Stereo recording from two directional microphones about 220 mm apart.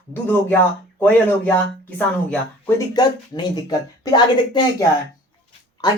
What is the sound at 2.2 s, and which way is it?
Speech, 10° left (ahead or behind).